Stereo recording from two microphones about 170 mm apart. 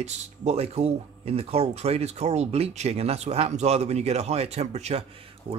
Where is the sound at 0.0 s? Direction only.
40° right (ahead or behind).